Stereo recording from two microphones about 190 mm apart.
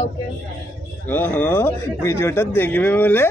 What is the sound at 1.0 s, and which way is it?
Speech, 10° left (ahead or behind).